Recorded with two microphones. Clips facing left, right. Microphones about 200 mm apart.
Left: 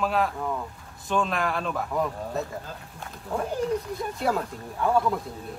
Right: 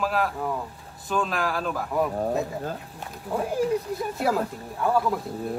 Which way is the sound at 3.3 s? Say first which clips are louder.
Right 2 dB; 5° right (ahead or behind).